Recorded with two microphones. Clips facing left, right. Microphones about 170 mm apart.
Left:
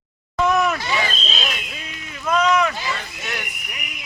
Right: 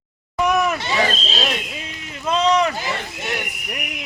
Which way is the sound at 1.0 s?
35° right (ahead or behind).